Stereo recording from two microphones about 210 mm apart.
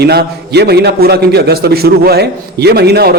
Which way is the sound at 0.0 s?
50° right (ahead or behind).